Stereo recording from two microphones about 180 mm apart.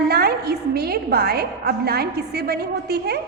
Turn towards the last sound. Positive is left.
turn(degrees=-60)  # may be behind; listen again after turning